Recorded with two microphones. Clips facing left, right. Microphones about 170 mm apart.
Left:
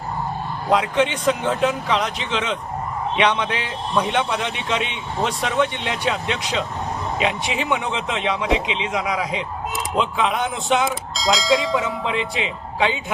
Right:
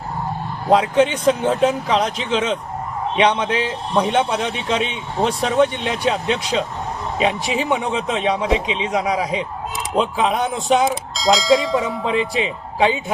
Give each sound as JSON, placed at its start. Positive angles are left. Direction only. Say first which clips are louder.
{"t": 0.7, "sound": "a man's voice", "louder": "right 4 dB", "side_deg": -35}
{"t": 11.1, "sound": "speech", "louder": "right 4 dB", "side_deg": 0}
{"t": 12.0, "sound": "a man's voice", "louder": "right 4 dB", "side_deg": -35}